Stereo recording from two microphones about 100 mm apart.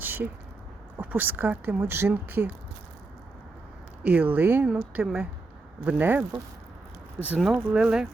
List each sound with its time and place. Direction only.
0.0 s a sound: 20° right (ahead or behind)
0.9 s speech: 20° right (ahead or behind)
4.0 s speech: 15° right (ahead or behind)
7.3 s speech: 5° right (ahead or behind)